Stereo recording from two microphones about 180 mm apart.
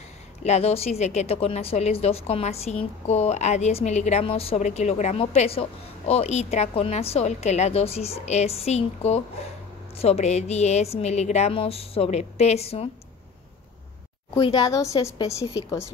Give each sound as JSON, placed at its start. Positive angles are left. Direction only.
{"t": 0.4, "sound": "speech", "side_deg": 35}
{"t": 14.4, "sound": "a woman's voice", "side_deg": 20}